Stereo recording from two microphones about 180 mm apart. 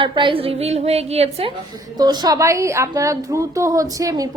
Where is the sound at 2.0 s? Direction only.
20° right (ahead or behind).